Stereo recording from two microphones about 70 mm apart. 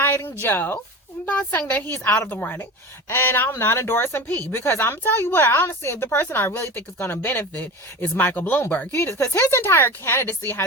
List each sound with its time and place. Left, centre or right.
0.0 s a woman's voice: left